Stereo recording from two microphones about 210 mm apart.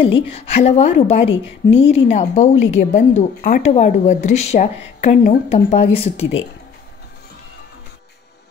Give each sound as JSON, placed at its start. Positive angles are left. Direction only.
{"t": 0.0, "sound": "a woman's voice", "side_deg": 25}